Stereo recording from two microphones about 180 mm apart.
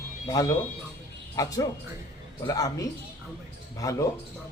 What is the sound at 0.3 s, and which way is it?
A woman's voice, 20° left (ahead or behind).